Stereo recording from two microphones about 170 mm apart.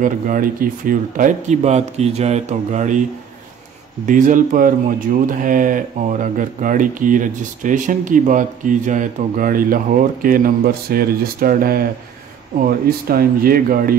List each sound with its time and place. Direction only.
0.0 s speech: 55° right (ahead or behind)
4.0 s speech: 50° right (ahead or behind)